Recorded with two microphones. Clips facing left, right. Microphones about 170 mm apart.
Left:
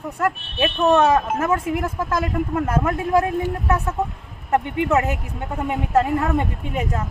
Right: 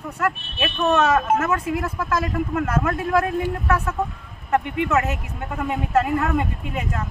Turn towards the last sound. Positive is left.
turn(degrees=30)  # may be behind; listen again after turning